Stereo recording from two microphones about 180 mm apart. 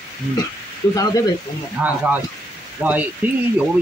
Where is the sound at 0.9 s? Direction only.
20° left (ahead or behind).